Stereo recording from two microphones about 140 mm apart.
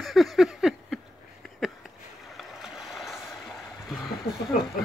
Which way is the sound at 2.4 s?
5° right (ahead or behind).